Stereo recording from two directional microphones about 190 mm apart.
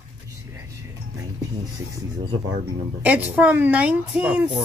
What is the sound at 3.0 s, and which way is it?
Speech, 10° right (ahead or behind).